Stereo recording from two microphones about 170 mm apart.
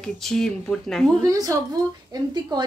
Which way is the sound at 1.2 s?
20° right (ahead or behind).